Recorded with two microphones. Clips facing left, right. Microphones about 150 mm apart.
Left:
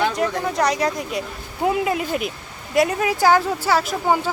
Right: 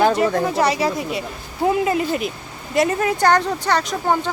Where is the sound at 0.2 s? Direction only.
5° right (ahead or behind).